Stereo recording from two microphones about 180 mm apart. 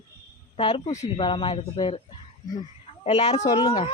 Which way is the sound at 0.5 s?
30° left (ahead or behind).